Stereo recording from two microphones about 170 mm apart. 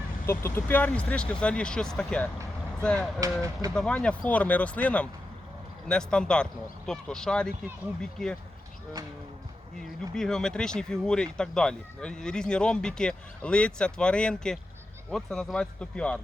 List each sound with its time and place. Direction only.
0.3 s speech: 15° left (ahead or behind)
9.7 s speech: 5° left (ahead or behind)